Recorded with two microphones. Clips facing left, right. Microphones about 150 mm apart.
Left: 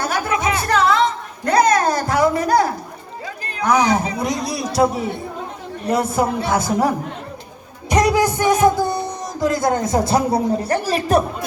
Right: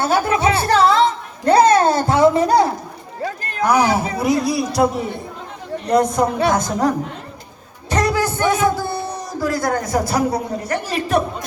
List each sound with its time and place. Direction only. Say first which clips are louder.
0.0 s music: right 4 dB; 30° right (ahead or behind)
1.5 s a sound: right 3 dB; 30° right (ahead or behind)
3.7 s speech: even; 10° right (ahead or behind); by 6.9 s 10° left (ahead or behind)
7.9 s a sound: left 3 dB; 15° left (ahead or behind)
8.6 s music: left 3 dB; 15° left (ahead or behind)
9.4 s a man's voice: left 2 dB; 20° left (ahead or behind)